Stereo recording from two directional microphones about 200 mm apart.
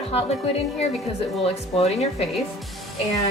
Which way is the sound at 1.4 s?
30° left (ahead or behind).